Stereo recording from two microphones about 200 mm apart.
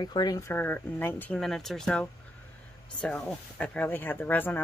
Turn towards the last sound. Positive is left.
turn(degrees=10)  # may be behind; listen again after turning